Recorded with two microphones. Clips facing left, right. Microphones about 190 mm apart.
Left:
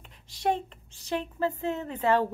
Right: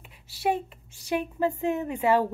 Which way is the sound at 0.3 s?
10° right (ahead or behind).